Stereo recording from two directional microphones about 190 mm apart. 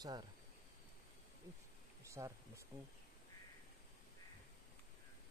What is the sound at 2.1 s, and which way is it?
Speech, 15° right (ahead or behind).